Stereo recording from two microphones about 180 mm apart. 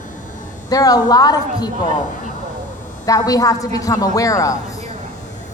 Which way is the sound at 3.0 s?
20° left (ahead or behind).